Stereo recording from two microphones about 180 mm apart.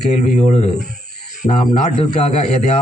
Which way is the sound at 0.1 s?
40° left (ahead or behind).